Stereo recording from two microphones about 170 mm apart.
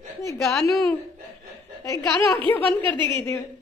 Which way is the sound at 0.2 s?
15° left (ahead or behind).